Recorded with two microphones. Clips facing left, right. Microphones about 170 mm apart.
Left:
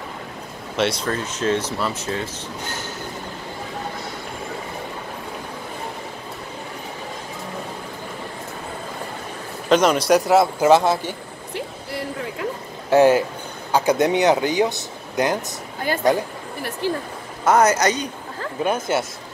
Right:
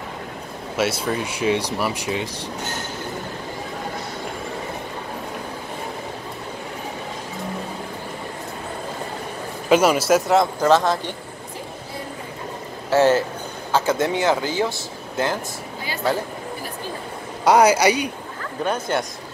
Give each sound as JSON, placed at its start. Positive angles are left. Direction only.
{"t": 0.7, "sound": "speech", "side_deg": -5}
{"t": 9.7, "sound": "speech", "side_deg": -5}
{"t": 11.5, "sound": "a sound", "side_deg": 75}
{"t": 12.9, "sound": "speech", "side_deg": 15}
{"t": 17.5, "sound": "speech", "side_deg": -10}
{"t": 18.6, "sound": "speech", "side_deg": 10}